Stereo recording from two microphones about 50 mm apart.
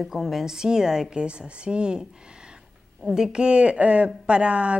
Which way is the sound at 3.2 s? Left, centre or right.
Centre.